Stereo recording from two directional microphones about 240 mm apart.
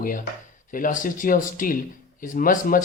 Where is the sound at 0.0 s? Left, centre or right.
Left.